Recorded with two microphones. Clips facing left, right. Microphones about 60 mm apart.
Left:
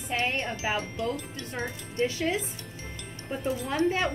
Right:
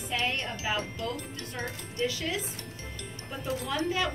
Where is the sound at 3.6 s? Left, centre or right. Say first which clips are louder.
Left 3 dB; left.